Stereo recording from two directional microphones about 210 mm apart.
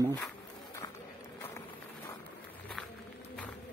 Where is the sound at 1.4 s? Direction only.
10° left (ahead or behind).